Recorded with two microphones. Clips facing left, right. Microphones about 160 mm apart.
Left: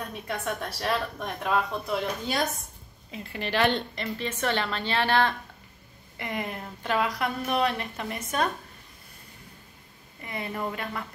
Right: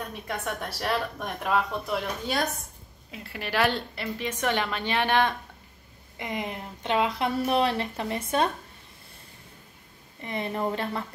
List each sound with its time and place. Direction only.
0.6 s a woman's voice: 5° right (ahead or behind); by 8.5 s 30° right (ahead or behind)
10.2 s a woman's voice: 25° right (ahead or behind)